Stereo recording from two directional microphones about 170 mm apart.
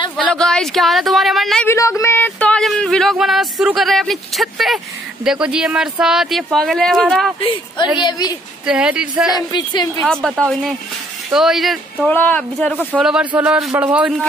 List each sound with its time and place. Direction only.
0.2 s a sound: 5° left (ahead or behind)
1.7 s a sound: 15° left (ahead or behind); by 4.7 s centre (ahead or behind)
5.2 s speech: 5° right (ahead or behind)
7.3 s a woman's voice: 35° left (ahead or behind)
8.6 s speech: 5° right (ahead or behind)
9.5 s a woman's voice: 25° left (ahead or behind)
10.2 s speech: centre (ahead or behind)
12.1 s speech: 10° left (ahead or behind)
12.7 s speech: 5° right (ahead or behind)